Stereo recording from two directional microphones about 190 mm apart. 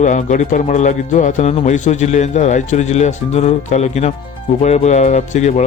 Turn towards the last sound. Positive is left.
turn(degrees=35)  # may be behind; listen again after turning